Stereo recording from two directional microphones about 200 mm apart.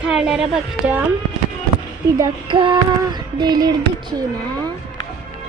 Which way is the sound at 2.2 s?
25° right (ahead or behind).